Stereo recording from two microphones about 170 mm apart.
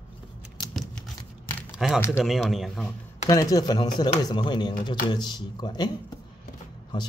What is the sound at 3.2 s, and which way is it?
Speech, 20° left (ahead or behind).